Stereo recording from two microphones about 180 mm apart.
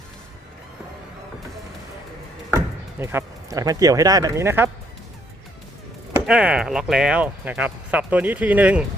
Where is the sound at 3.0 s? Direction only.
15° right (ahead or behind).